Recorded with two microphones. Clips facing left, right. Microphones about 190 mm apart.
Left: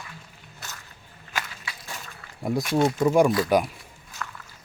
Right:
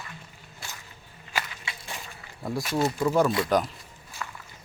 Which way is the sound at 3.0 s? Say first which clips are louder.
Left 3 dB; 20° left (ahead or behind).